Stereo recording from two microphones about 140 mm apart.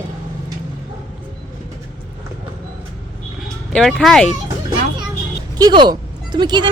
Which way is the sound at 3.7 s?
5° left (ahead or behind).